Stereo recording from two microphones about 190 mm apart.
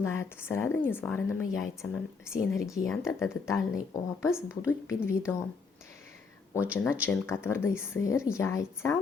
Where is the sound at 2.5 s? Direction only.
Centre (ahead or behind).